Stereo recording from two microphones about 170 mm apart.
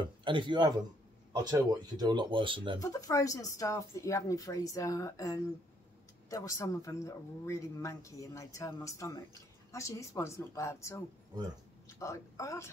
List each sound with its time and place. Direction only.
0.0 s speech: 30° right (ahead or behind)
2.8 s a woman's voice: 20° left (ahead or behind)
12.0 s speech: 15° left (ahead or behind)